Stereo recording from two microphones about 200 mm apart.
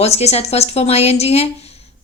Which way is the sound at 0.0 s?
30° left (ahead or behind).